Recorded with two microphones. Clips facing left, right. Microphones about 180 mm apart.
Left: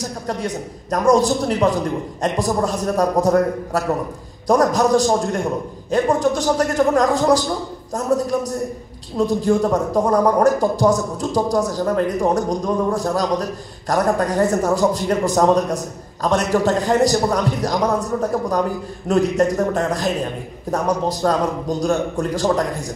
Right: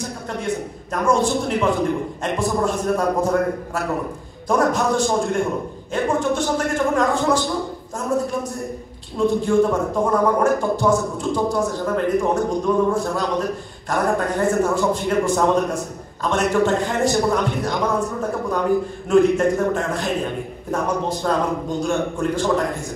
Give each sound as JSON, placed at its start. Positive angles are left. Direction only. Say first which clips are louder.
{"t": 0.0, "sound": "a man's voice", "louder": "left 2 dB", "side_deg": 40}
{"t": 19.0, "sound": "speech", "louder": "right 1 dB", "side_deg": 40}